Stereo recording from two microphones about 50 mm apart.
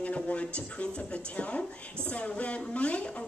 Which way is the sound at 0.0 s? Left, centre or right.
Left.